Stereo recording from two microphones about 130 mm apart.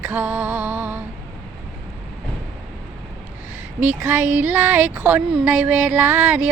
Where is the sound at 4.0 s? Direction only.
15° right (ahead or behind).